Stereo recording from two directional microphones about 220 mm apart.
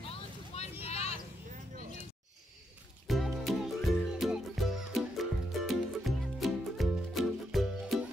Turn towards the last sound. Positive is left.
turn(degrees=0)  # may be behind; listen again after turning